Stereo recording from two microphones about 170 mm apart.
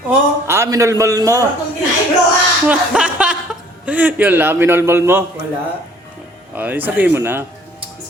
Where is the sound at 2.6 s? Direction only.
5° right (ahead or behind).